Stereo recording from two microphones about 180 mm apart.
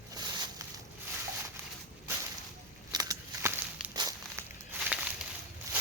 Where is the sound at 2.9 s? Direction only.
20° right (ahead or behind).